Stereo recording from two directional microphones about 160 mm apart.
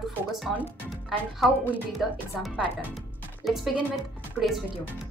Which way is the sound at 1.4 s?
Centre (ahead or behind).